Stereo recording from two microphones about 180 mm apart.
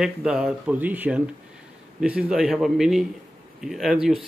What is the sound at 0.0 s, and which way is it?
Speech, 5° right (ahead or behind).